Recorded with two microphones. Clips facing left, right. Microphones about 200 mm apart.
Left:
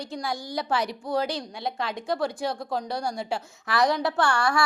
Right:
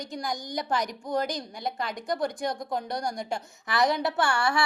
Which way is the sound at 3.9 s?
20° right (ahead or behind).